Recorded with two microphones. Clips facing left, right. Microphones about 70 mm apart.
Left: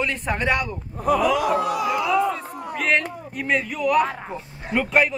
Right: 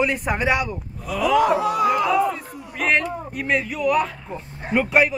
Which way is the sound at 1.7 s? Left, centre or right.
Right.